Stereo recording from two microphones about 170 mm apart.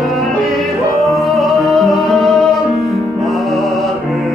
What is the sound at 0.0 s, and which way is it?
Music, centre (ahead or behind).